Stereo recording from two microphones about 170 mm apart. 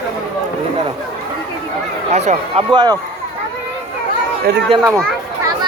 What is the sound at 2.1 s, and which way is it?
Speech, 40° right (ahead or behind).